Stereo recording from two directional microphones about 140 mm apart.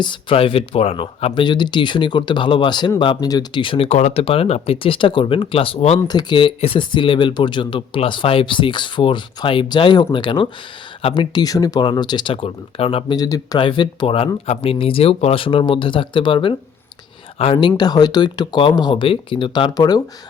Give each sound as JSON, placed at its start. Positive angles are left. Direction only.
{"t": 0.0, "sound": "speech", "side_deg": 35}
{"t": 6.1, "sound": "speech", "side_deg": 30}
{"t": 13.1, "sound": "speech", "side_deg": 25}